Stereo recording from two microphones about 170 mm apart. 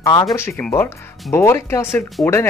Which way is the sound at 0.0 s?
20° left (ahead or behind).